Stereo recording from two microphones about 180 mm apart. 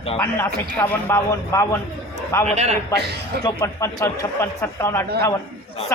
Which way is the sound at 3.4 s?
15° left (ahead or behind).